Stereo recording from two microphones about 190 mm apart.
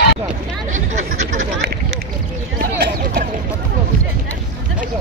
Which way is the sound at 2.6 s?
55° right (ahead or behind).